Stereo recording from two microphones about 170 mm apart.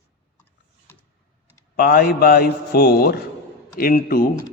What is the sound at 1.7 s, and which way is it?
A man's voice, 65° left (ahead or behind).